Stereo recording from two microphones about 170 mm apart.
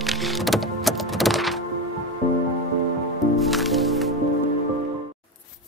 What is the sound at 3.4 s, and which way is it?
Music, centre (ahead or behind).